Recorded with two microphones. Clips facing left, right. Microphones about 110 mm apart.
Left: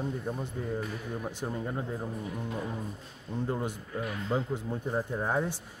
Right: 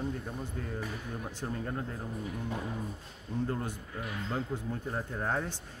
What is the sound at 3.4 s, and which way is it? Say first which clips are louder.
Speech: left 3 dB; 20° left (ahead or behind).